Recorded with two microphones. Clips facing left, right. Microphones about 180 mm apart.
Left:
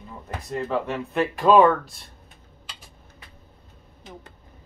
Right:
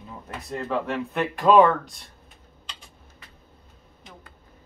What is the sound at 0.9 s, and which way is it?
Speech, centre (ahead or behind).